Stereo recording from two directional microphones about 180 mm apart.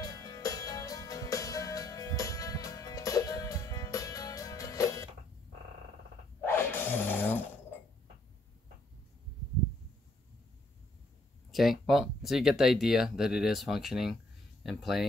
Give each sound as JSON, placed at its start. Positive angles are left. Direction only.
{"t": 0.0, "sound": "music", "side_deg": 20}
{"t": 6.4, "sound": "shatter", "side_deg": 10}
{"t": 11.5, "sound": "speech", "side_deg": 0}